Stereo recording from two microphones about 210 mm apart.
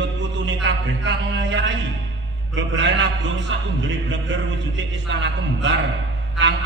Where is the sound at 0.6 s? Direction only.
60° right (ahead or behind).